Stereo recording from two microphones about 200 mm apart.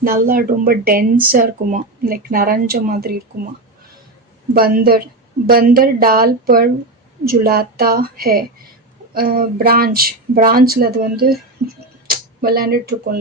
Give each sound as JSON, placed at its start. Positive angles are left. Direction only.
{"t": 0.0, "sound": "speech", "side_deg": -45}
{"t": 4.5, "sound": "speech", "side_deg": -50}